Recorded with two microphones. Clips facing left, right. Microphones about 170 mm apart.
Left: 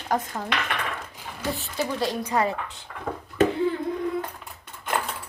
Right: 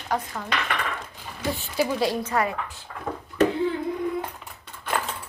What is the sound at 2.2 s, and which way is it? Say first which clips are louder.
Speech: left 1 dB; 25° left (ahead or behind).